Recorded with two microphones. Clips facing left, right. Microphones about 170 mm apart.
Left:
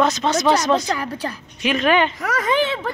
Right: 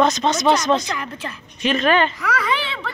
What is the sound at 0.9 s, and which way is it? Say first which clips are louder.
Speech: left 4 dB; 35° left (ahead or behind).